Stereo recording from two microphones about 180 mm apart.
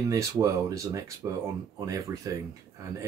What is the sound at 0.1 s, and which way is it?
Speech, 20° right (ahead or behind).